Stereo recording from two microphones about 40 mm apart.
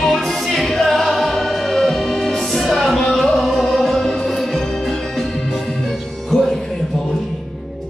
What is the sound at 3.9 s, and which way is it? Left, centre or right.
Music, centre.